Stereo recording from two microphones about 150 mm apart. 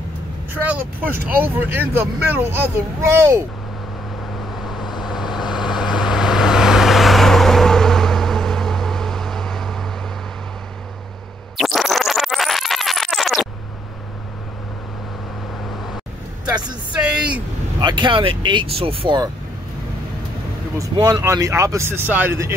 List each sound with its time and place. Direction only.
0.7 s speech: 15° right (ahead or behind)
4.6 s vehicle: centre (ahead or behind)
11.5 s music: centre (ahead or behind)
16.4 s a sound: 30° right (ahead or behind)
17.7 s speech: 30° right (ahead or behind)
20.9 s speech: 25° right (ahead or behind)